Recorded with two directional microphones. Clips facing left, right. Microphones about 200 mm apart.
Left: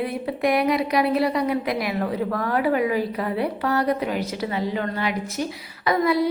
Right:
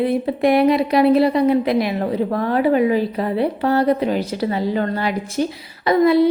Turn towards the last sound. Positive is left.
turn(degrees=-25)  # may be behind; listen again after turning